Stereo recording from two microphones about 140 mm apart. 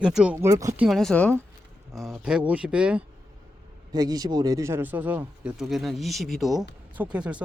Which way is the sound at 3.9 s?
25° right (ahead or behind).